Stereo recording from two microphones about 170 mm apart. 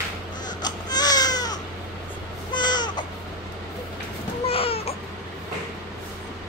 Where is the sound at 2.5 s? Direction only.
25° left (ahead or behind).